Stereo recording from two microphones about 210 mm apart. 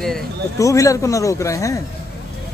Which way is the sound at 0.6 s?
15° left (ahead or behind).